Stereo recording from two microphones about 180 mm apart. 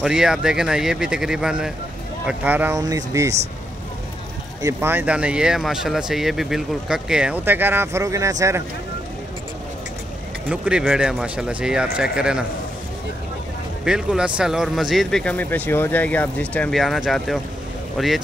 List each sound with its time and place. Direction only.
0.0 s speech: 5° right (ahead or behind)
2.8 s speech: 20° right (ahead or behind)
4.6 s speech: 15° right (ahead or behind)
10.5 s speech: 5° right (ahead or behind)
13.8 s speech: 5° right (ahead or behind)